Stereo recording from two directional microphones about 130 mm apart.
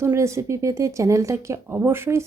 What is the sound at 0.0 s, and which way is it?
Speech, 20° right (ahead or behind).